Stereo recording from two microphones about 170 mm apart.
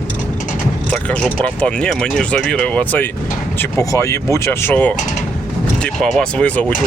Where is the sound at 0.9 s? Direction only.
5° left (ahead or behind).